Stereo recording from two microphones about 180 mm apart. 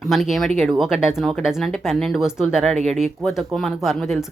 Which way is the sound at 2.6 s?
35° right (ahead or behind).